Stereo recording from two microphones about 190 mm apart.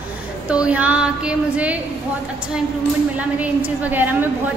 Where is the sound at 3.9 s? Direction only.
10° right (ahead or behind).